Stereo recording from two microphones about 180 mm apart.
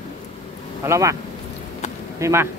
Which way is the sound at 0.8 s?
15° right (ahead or behind).